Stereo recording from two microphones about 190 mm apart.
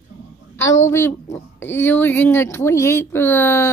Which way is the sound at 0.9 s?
10° left (ahead or behind).